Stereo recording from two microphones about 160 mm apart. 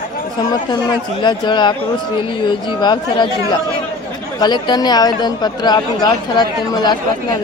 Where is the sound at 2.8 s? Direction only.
30° left (ahead or behind).